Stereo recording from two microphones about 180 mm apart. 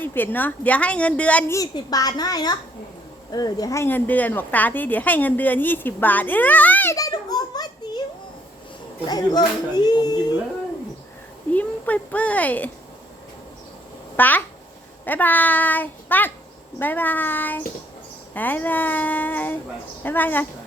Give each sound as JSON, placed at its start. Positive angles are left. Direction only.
{"t": 0.0, "sound": "speech", "side_deg": 10}
{"t": 1.5, "sound": "speech", "side_deg": 20}
{"t": 9.0, "sound": "speech", "side_deg": 20}
{"t": 11.5, "sound": "speech", "side_deg": 10}
{"t": 14.2, "sound": "speech", "side_deg": 10}